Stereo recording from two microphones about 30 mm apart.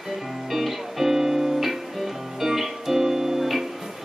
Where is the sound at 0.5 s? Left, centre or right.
Centre.